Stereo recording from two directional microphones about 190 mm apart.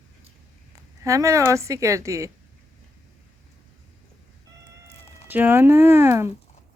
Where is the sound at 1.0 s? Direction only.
15° right (ahead or behind).